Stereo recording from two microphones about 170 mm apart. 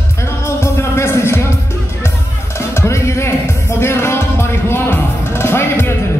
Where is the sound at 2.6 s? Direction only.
15° left (ahead or behind).